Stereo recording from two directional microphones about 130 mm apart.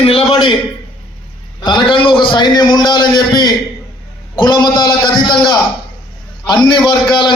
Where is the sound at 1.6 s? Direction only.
40° left (ahead or behind).